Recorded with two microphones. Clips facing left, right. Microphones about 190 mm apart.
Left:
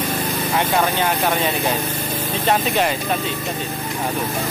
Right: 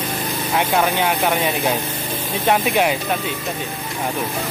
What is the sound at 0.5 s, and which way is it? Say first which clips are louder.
Speech: right 1 dB; 10° right (ahead or behind).